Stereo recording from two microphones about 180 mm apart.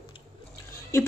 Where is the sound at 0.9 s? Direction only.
15° left (ahead or behind).